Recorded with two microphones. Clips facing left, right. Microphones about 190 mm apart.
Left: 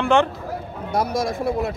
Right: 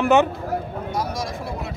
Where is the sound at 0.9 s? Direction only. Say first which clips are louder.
Left 7 dB; 55° left (ahead or behind).